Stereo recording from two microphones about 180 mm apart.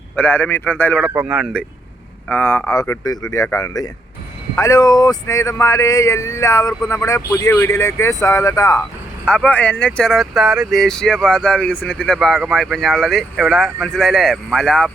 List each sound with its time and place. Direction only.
0.2 s speech: 10° left (ahead or behind)
1.1 s speech: 5° right (ahead or behind)
2.3 s speech: 10° left (ahead or behind)
9.2 s speech: 5° left (ahead or behind)